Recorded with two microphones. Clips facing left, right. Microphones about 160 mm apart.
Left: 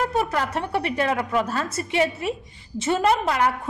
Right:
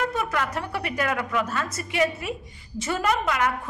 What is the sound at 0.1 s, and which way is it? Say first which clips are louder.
A woman's voice: left 3 dB; 35° left (ahead or behind).